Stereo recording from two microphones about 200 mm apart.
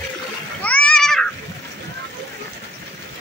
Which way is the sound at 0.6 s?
5° left (ahead or behind).